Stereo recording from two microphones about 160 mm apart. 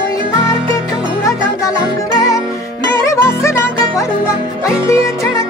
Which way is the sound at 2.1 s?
20° left (ahead or behind).